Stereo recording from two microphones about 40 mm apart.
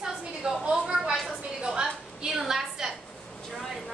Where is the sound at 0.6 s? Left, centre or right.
Right; by 2.9 s centre.